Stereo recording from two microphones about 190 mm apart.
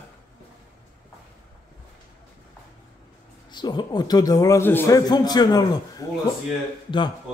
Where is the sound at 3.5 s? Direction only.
25° left (ahead or behind).